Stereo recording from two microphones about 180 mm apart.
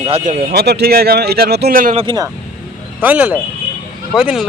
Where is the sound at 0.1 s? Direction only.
45° right (ahead or behind).